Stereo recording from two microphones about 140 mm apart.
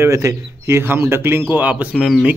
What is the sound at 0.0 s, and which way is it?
Speech, 20° right (ahead or behind).